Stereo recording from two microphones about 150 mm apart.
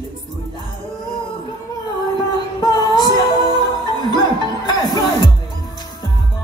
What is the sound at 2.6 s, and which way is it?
Music, 25° left (ahead or behind).